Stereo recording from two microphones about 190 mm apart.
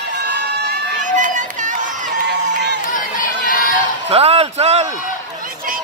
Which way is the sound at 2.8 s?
45° left (ahead or behind).